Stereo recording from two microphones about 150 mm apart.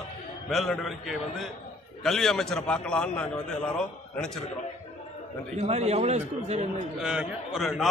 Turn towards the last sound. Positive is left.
turn(degrees=0)  # may be behind; listen again after turning